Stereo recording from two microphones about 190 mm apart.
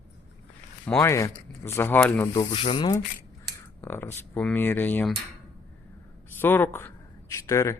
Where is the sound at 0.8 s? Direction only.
15° left (ahead or behind).